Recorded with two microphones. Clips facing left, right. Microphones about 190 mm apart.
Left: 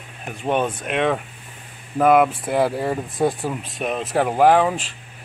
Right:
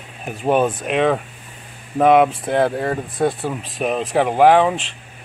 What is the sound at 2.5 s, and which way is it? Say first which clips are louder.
Speech: right 2 dB; 5° left (ahead or behind).